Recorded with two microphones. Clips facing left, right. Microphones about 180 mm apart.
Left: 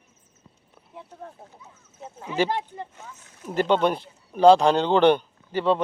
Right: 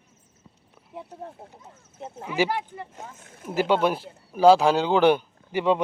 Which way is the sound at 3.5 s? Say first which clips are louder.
Left 1 dB; 5° right (ahead or behind).